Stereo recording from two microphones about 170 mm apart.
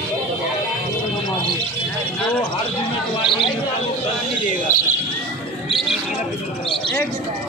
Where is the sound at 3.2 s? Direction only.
30° left (ahead or behind).